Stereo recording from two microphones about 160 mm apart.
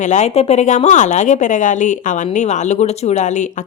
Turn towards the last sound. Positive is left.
turn(degrees=50)  # may be behind; listen again after turning